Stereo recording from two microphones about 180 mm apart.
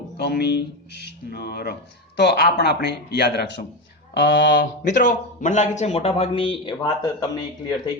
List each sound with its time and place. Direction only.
0.2 s speech: 65° left (ahead or behind)
4.9 s a man's voice: 45° left (ahead or behind); by 7.4 s 25° left (ahead or behind)